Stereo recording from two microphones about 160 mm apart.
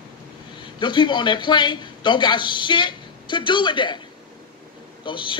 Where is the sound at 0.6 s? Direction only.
30° left (ahead or behind).